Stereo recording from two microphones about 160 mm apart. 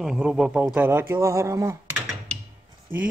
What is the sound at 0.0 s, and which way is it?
A man's voice, 5° right (ahead or behind).